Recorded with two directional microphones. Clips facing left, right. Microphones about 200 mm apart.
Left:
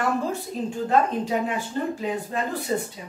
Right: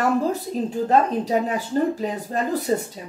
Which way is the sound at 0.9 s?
40° right (ahead or behind).